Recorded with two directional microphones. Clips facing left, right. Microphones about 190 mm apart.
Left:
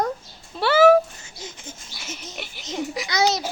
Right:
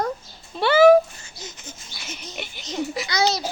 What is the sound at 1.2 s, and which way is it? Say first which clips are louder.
Wail: left 1 dB; 25° left (ahead or behind).